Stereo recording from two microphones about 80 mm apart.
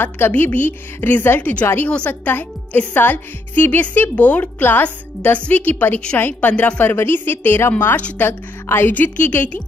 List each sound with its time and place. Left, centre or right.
0.0 s a woman's voice: left
6.8 s a woman's voice: left
7.8 s a woman's voice: centre